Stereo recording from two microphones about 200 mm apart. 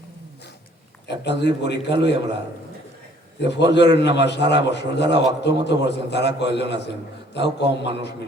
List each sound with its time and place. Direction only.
1.2 s a man's voice: 60° left (ahead or behind)
3.4 s a man's voice: 60° left (ahead or behind)